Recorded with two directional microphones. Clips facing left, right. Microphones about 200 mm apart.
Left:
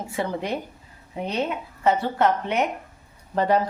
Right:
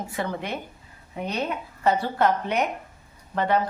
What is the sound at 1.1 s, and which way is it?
Speech, 25° left (ahead or behind).